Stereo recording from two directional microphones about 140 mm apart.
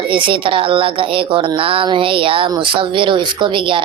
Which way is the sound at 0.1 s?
40° right (ahead or behind).